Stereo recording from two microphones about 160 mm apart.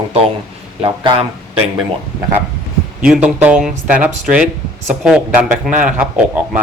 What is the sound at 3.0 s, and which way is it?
Speech, 5° right (ahead or behind).